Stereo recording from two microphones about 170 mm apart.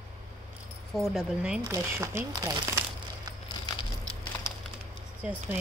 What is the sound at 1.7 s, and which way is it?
Speech, 15° right (ahead or behind).